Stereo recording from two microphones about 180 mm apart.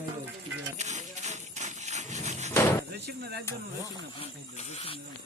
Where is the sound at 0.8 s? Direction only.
40° right (ahead or behind).